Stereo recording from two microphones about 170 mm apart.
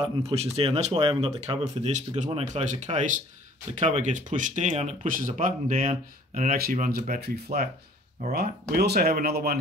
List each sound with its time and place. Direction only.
0.0 s speech: 35° right (ahead or behind)
0.9 s speech: 25° right (ahead or behind)
1.6 s speech: 45° right (ahead or behind); by 9.6 s 65° right (ahead or behind)